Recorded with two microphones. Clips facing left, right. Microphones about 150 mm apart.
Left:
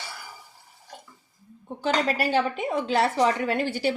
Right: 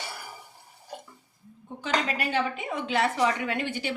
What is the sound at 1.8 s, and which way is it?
A woman's voice, 35° left (ahead or behind).